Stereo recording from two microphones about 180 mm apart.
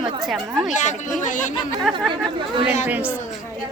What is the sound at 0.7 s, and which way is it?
Speech, 45° left (ahead or behind).